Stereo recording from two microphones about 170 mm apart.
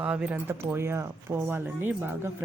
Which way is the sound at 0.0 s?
5° right (ahead or behind).